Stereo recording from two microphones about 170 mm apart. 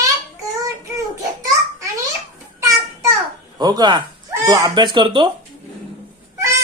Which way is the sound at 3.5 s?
25° right (ahead or behind).